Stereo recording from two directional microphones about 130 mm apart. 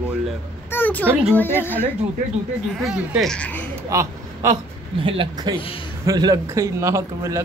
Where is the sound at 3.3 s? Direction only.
10° left (ahead or behind).